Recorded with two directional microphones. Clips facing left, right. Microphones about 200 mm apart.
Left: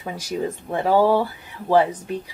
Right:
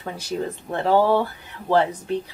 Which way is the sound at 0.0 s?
10° left (ahead or behind).